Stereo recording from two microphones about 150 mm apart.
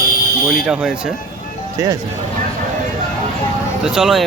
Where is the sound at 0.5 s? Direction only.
5° right (ahead or behind).